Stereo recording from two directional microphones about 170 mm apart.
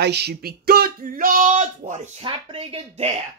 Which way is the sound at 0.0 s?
75° right (ahead or behind).